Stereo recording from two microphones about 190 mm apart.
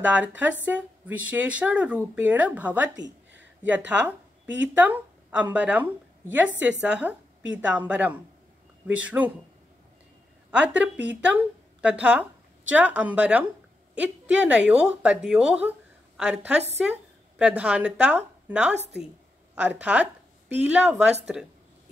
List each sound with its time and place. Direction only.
0.0 s speech: 10° right (ahead or behind)
3.0 s a sound: 70° right (ahead or behind)
4.7 s a woman's voice: 5° right (ahead or behind)
10.7 s a woman's voice: 5° right (ahead or behind)